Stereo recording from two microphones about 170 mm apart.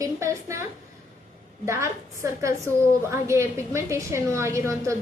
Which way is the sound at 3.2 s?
15° right (ahead or behind).